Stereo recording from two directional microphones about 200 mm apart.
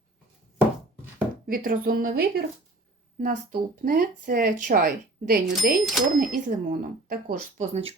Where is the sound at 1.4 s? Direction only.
45° right (ahead or behind).